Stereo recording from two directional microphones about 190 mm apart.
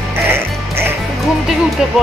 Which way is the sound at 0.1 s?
10° right (ahead or behind).